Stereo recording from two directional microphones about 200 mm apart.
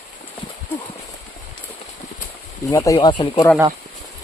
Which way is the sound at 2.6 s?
15° left (ahead or behind).